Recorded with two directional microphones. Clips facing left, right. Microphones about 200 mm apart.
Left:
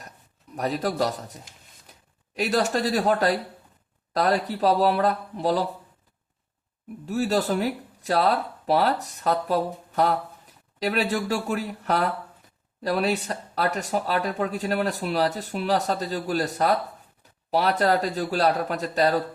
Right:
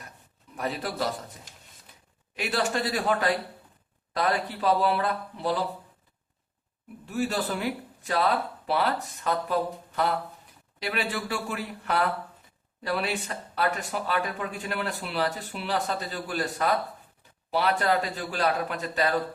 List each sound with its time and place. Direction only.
0.5 s speech: 40° left (ahead or behind)
2.3 s speech: 40° left (ahead or behind)
7.0 s speech: 40° left (ahead or behind)